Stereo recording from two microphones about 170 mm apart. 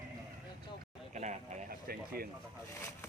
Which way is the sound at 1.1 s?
45° right (ahead or behind).